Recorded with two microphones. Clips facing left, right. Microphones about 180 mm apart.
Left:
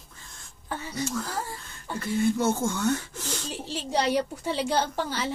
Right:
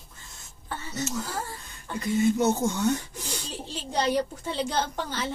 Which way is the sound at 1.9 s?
20° right (ahead or behind).